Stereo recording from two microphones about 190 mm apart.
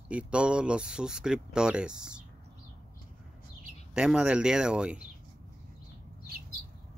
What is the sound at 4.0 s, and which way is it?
Speech, 5° right (ahead or behind).